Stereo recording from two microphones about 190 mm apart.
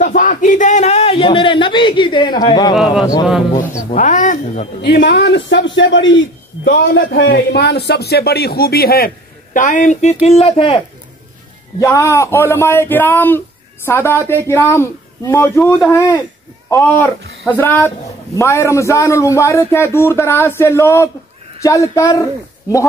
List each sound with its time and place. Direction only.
0.0 s speech: 45° left (ahead or behind); by 2.7 s 20° left (ahead or behind)
3.9 s speech: 40° left (ahead or behind)
4.8 s a man's voice: 60° left (ahead or behind); by 10.8 s 30° left (ahead or behind)
11.8 s a man's voice: 15° left (ahead or behind)
16.7 s a man's voice: 10° left (ahead or behind)